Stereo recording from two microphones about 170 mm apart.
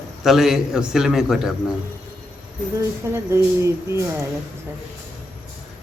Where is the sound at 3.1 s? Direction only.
15° right (ahead or behind).